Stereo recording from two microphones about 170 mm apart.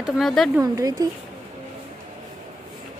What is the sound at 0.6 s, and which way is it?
Speech, 20° right (ahead or behind).